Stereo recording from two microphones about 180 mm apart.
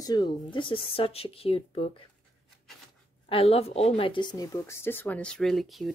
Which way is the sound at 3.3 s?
35° left (ahead or behind).